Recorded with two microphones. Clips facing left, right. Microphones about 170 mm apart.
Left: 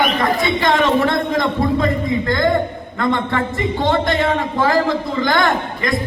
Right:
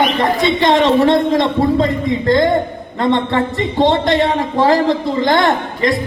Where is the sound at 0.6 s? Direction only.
30° right (ahead or behind).